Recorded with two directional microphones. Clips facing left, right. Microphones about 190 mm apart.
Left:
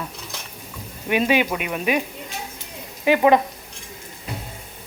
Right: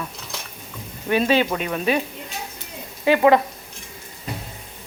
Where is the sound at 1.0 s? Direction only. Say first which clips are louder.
Right 1 dB; 15° left (ahead or behind).